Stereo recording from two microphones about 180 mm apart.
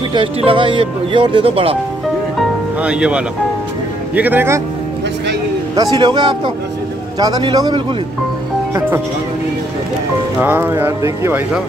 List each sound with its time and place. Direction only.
0.1 s speech: 30° right (ahead or behind)
2.8 s speech: 5° right (ahead or behind)
5.8 s speech: 25° right (ahead or behind)
10.4 s speech: 10° right (ahead or behind)